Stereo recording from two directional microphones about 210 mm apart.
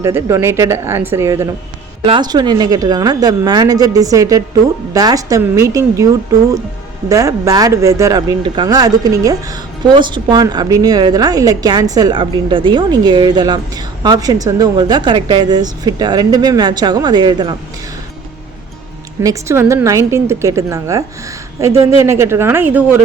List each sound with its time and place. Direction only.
0.0 s speech: 15° right (ahead or behind)
7.1 s speech: 15° right (ahead or behind)
19.2 s speech: 15° right (ahead or behind)